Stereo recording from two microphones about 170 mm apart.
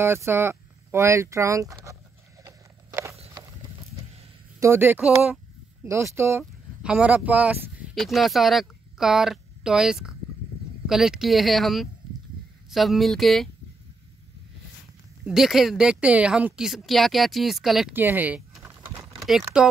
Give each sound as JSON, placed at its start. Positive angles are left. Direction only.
{"t": 0.0, "sound": "speech", "side_deg": -15}
{"t": 2.4, "sound": "a sound", "side_deg": -20}
{"t": 4.6, "sound": "speech", "side_deg": -15}
{"t": 5.9, "sound": "speech", "side_deg": -15}
{"t": 7.9, "sound": "speech", "side_deg": 0}
{"t": 15.2, "sound": "speech", "side_deg": 0}